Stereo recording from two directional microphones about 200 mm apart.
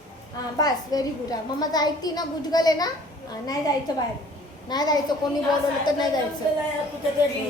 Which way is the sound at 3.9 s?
20° left (ahead or behind).